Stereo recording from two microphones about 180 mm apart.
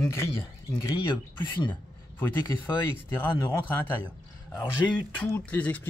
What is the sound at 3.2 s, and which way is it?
Speech, 25° left (ahead or behind).